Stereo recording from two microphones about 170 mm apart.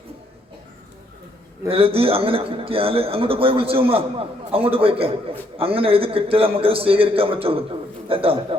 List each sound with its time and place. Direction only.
1.7 s speech: 35° right (ahead or behind)